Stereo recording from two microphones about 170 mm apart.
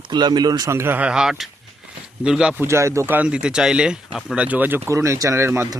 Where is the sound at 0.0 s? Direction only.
25° right (ahead or behind); by 2.6 s 5° right (ahead or behind).